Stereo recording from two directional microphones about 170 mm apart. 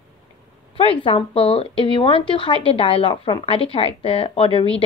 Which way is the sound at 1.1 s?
30° left (ahead or behind).